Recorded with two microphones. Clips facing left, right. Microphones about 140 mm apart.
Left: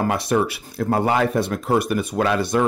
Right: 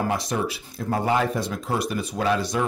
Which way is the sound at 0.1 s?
65° left (ahead or behind).